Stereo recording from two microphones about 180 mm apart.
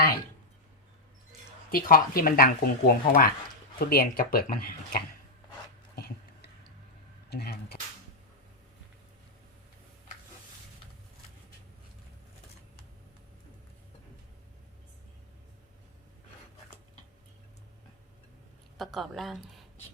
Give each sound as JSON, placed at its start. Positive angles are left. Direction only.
{"t": 1.7, "sound": "speech", "side_deg": 55}
{"t": 7.3, "sound": "speech", "side_deg": 60}
{"t": 18.8, "sound": "a woman's voice", "side_deg": 0}